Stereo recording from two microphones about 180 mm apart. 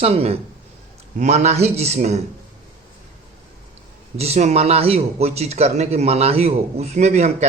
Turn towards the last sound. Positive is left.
turn(degrees=-40)  # may be behind; listen again after turning